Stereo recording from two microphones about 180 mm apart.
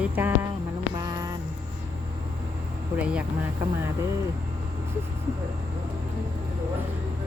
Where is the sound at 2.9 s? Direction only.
5° right (ahead or behind).